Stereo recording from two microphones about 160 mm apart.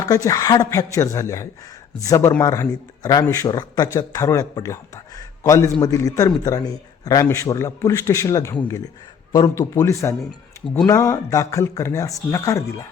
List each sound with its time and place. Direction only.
0.0 s a man's voice: 20° left (ahead or behind)